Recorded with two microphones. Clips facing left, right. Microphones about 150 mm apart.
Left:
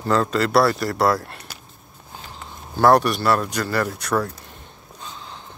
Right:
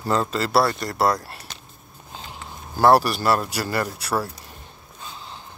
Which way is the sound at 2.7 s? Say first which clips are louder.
Left 1 dB; 5° right (ahead or behind).